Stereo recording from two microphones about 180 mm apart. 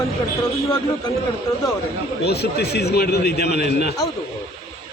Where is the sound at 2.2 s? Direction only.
65° left (ahead or behind).